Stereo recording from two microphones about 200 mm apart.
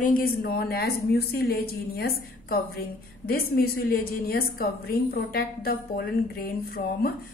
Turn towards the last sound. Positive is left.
turn(degrees=50)  # may be behind; listen again after turning